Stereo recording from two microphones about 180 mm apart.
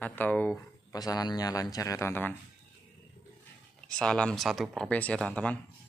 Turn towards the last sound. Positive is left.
turn(degrees=5)  # may be behind; listen again after turning